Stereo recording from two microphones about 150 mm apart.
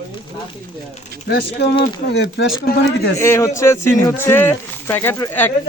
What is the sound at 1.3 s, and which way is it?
Speech, 90° left.